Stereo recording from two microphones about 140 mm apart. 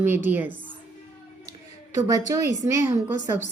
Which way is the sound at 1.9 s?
25° right (ahead or behind).